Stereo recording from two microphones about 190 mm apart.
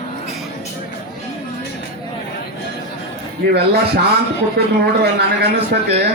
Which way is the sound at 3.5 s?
55° right (ahead or behind).